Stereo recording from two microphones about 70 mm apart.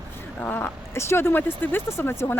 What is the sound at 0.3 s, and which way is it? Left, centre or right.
Speech, left.